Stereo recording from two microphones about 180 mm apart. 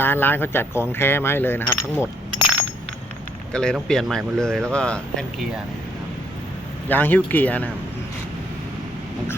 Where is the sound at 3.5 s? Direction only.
5° left (ahead or behind).